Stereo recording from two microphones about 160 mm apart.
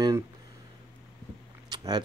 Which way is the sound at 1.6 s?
25° right (ahead or behind).